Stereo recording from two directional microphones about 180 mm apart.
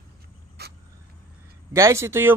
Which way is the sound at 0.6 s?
65° right (ahead or behind).